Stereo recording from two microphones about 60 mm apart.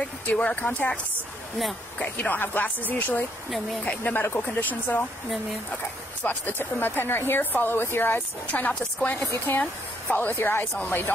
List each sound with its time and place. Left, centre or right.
0.4 s speech: left
2.0 s speech: left
3.4 s speech: centre
3.8 s speech: left
4.1 s speech: left
6.2 s speech: left
10.3 s speech: left